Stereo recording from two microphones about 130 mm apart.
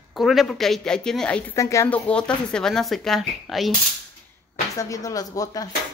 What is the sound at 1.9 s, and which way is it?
Speech, 10° left (ahead or behind).